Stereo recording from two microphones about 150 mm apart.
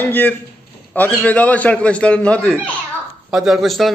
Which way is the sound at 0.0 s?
15° left (ahead or behind).